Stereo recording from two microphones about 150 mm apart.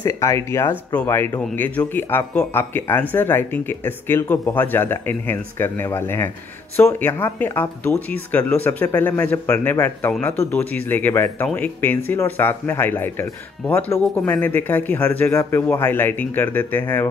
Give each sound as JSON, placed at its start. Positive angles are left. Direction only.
{"t": 0.0, "sound": "speech", "side_deg": 20}